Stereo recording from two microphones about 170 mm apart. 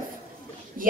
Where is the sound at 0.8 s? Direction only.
55° right (ahead or behind).